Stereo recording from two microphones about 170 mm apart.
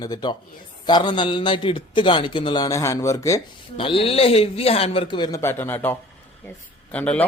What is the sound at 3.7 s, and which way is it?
A man's voice, 30° left (ahead or behind).